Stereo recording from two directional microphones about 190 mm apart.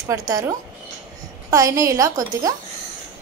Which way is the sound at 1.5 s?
15° right (ahead or behind).